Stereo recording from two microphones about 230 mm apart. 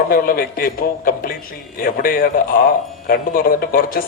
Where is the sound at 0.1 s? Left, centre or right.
Left.